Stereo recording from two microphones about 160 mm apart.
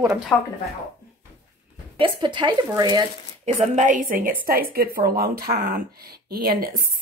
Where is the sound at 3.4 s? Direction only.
45° right (ahead or behind).